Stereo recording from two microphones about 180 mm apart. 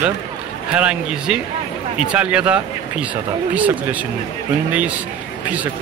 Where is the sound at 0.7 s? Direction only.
5° right (ahead or behind).